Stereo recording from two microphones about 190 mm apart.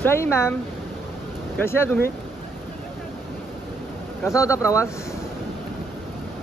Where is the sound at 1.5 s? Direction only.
10° left (ahead or behind).